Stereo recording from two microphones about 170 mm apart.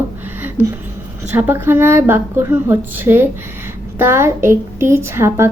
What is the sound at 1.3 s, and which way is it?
A woman's voice, 10° right (ahead or behind).